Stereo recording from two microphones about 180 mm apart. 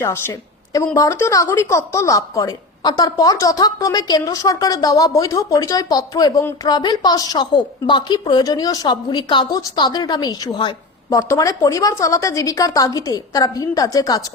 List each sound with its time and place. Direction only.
0.0 s a woman's voice: 15° left (ahead or behind)